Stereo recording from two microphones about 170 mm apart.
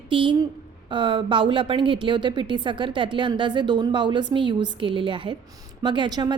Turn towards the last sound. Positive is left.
turn(degrees=-25)  # may be behind; listen again after turning